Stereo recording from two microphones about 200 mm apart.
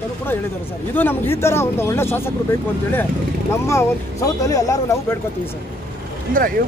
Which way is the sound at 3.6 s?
15° left (ahead or behind).